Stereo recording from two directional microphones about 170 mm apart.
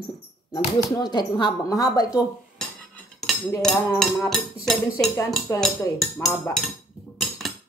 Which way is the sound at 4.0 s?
Centre (ahead or behind).